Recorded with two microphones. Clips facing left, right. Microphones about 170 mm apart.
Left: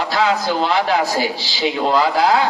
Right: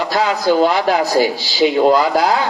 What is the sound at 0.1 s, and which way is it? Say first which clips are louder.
Speech: right 4 dB; 40° right (ahead or behind).